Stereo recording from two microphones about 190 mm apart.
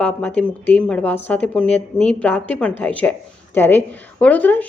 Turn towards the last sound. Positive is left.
turn(degrees=10)  # may be behind; listen again after turning